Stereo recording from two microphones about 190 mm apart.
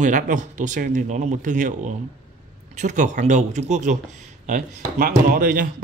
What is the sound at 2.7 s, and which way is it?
Speech, 40° right (ahead or behind).